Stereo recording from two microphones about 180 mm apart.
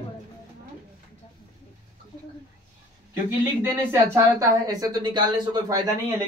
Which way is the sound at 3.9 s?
15° right (ahead or behind).